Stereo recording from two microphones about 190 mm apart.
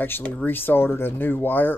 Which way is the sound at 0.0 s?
10° left (ahead or behind).